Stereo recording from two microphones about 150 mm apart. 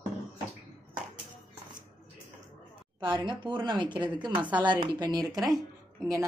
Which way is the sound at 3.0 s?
30° right (ahead or behind).